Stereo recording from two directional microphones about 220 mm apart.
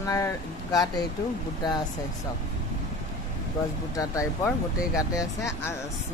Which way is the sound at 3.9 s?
15° left (ahead or behind).